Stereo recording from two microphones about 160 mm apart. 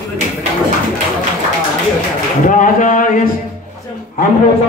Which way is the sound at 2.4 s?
55° left (ahead or behind).